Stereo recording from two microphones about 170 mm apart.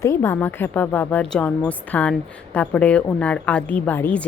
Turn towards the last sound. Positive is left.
turn(degrees=10)  # may be behind; listen again after turning